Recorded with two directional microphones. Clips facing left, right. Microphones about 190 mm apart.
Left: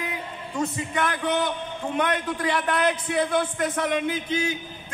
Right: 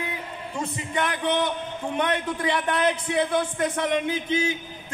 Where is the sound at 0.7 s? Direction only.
25° right (ahead or behind).